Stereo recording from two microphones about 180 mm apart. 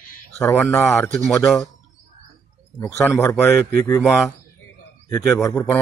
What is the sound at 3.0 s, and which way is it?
Speech, 15° left (ahead or behind).